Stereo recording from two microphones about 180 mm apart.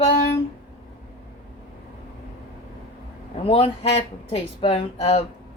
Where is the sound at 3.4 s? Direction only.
30° left (ahead or behind).